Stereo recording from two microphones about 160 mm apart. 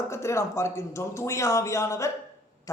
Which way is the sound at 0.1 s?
20° left (ahead or behind).